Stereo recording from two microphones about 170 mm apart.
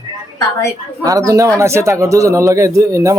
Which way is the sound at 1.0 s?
20° right (ahead or behind).